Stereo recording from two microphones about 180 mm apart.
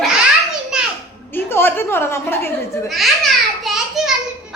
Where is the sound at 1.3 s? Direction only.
10° left (ahead or behind).